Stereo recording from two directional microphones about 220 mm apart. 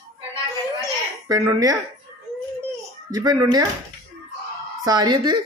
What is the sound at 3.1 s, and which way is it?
Speech, 15° right (ahead or behind).